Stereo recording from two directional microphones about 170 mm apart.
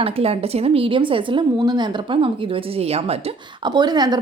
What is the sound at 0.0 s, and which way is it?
A woman's voice, 35° right (ahead or behind).